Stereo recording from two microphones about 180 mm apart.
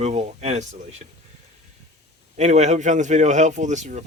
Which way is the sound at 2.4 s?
40° right (ahead or behind).